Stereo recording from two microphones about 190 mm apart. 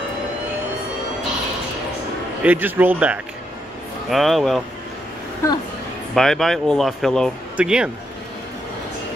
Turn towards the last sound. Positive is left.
turn(degrees=-5)  # may be behind; listen again after turning